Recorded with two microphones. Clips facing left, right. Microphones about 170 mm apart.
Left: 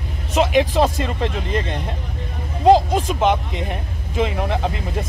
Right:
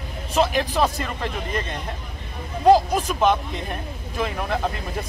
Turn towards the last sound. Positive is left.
turn(degrees=20)  # may be behind; listen again after turning